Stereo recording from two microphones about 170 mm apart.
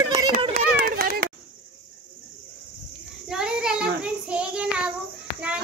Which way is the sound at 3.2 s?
5° right (ahead or behind).